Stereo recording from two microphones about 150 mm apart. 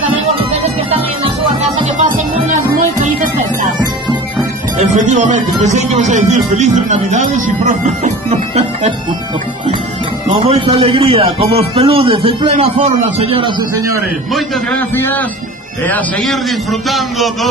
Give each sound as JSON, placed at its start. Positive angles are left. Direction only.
{"t": 0.9, "sound": "music", "side_deg": -40}
{"t": 2.5, "sound": "music", "side_deg": -60}
{"t": 4.7, "sound": "speech", "side_deg": -55}
{"t": 10.3, "sound": "a man's voice", "side_deg": -35}
{"t": 15.0, "sound": "a man's voice", "side_deg": 15}
{"t": 15.9, "sound": "music", "side_deg": 5}